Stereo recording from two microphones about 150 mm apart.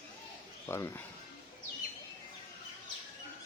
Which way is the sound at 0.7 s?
15° left (ahead or behind).